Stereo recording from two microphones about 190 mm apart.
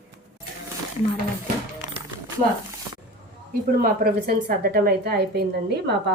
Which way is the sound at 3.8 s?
50° right (ahead or behind).